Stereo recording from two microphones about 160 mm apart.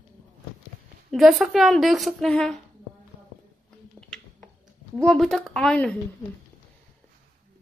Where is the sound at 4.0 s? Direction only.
5° left (ahead or behind).